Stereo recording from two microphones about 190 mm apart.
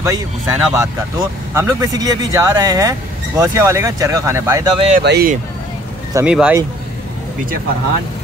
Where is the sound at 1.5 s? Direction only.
15° right (ahead or behind).